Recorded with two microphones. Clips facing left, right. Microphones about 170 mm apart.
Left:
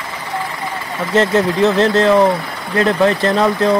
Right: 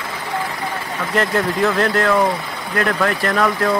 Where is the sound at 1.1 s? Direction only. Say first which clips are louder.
Left 5 dB; 25° left (ahead or behind).